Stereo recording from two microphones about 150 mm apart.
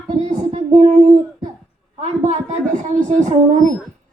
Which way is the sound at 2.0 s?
50° right (ahead or behind).